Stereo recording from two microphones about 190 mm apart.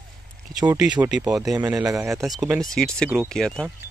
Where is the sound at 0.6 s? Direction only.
20° right (ahead or behind).